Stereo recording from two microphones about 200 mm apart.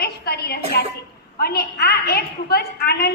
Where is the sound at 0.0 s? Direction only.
50° left (ahead or behind).